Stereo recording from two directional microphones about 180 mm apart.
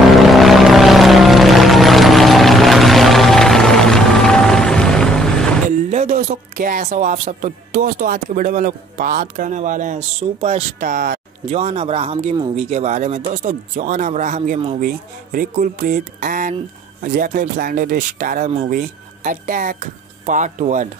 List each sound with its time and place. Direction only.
0.0 s vehicle: centre (ahead or behind)
5.7 s speech: 45° right (ahead or behind)
10.8 s speech: 55° right (ahead or behind)
11.5 s speech: 35° right (ahead or behind)
14.8 s speech: 50° right (ahead or behind)